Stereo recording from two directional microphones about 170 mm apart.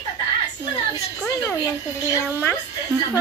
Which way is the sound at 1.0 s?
15° left (ahead or behind).